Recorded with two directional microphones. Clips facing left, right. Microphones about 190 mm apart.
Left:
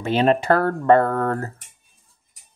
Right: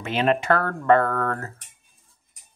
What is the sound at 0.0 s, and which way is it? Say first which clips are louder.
Speech: left 4 dB; 35° left (ahead or behind).